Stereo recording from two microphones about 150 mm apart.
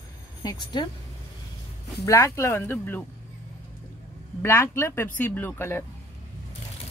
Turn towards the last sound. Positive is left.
turn(degrees=15)  # may be behind; listen again after turning